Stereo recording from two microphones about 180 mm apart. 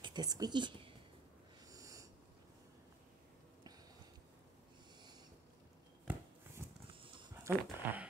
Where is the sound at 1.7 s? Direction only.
20° right (ahead or behind).